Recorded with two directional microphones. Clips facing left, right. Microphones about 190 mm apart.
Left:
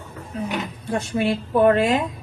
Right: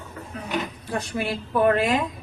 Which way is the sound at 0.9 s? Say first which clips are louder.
Left 6 dB; 25° left (ahead or behind).